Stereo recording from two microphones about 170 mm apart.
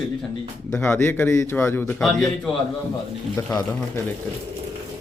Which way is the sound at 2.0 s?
Centre (ahead or behind).